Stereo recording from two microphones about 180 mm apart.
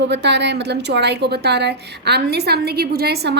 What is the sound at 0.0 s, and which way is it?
A woman's voice, 70° right (ahead or behind).